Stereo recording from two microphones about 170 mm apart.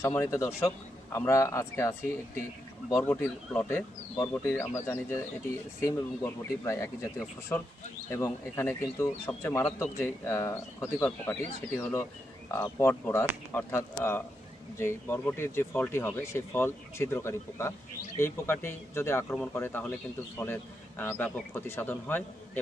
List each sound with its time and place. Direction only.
0.0 s speech: 15° left (ahead or behind)